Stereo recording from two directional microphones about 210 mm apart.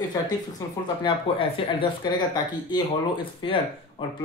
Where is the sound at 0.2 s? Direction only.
15° left (ahead or behind).